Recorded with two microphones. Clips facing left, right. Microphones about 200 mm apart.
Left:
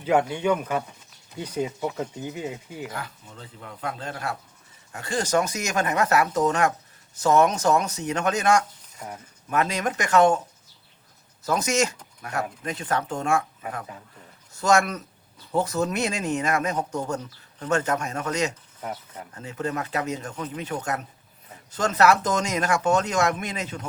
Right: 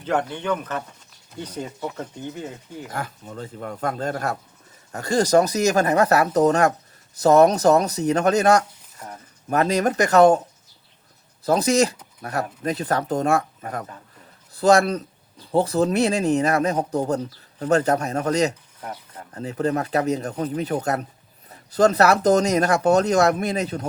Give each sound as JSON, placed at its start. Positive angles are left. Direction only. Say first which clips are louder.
{"t": 0.0, "sound": "speech", "louder": "left 2 dB", "side_deg": 10}
{"t": 2.9, "sound": "speech", "louder": "right 5 dB", "side_deg": -50}
{"t": 11.4, "sound": "speech", "louder": "right 5 dB", "side_deg": -35}
{"t": 18.8, "sound": "speech", "louder": "left 3 dB", "side_deg": 10}
{"t": 19.3, "sound": "speech", "louder": "right 7 dB", "side_deg": -35}